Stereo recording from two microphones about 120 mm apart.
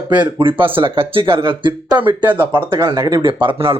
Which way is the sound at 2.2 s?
15° right (ahead or behind).